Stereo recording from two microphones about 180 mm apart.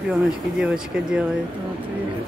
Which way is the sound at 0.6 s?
5° right (ahead or behind).